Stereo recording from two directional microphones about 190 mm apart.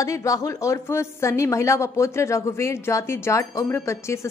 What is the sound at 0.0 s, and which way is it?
A woman's voice, 15° left (ahead or behind).